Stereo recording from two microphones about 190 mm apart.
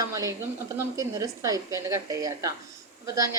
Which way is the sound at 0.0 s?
15° right (ahead or behind).